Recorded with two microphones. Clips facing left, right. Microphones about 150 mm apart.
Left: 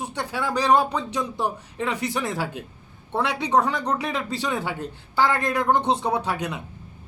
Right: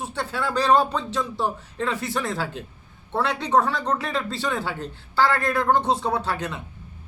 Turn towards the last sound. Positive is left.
turn(degrees=15)  # may be behind; listen again after turning